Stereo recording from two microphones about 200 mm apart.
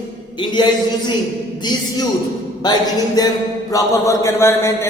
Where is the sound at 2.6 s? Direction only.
20° left (ahead or behind).